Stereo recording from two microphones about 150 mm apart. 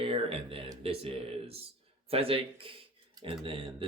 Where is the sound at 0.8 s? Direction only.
40° right (ahead or behind).